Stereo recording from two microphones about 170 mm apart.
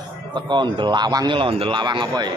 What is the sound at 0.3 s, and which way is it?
Speech, 30° right (ahead or behind).